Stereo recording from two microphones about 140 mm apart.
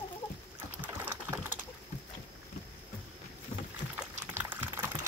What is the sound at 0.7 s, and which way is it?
Typing, 15° right (ahead or behind).